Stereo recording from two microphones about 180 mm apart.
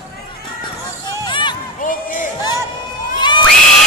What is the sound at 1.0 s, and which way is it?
Music, 25° left (ahead or behind).